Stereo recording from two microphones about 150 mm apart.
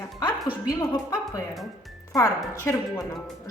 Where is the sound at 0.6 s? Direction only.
25° left (ahead or behind).